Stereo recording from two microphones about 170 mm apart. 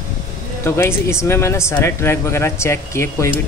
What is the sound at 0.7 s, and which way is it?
Speech, 15° left (ahead or behind).